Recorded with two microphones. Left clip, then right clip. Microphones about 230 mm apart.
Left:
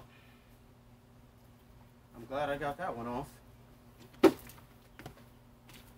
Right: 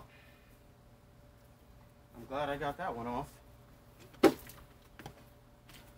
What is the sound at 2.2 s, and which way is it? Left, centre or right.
Speech, centre.